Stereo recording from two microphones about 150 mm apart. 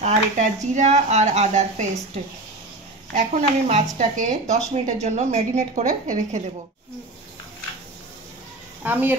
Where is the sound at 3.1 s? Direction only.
55° right (ahead or behind).